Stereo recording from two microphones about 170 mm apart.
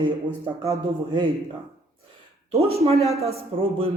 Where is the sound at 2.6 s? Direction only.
35° right (ahead or behind).